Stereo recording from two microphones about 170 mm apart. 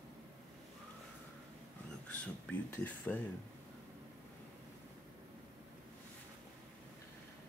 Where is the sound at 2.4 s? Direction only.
10° left (ahead or behind).